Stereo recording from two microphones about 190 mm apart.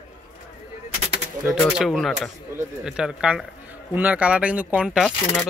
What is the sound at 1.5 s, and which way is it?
Speech, centre (ahead or behind).